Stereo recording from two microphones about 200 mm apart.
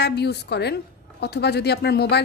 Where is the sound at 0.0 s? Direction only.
55° left (ahead or behind).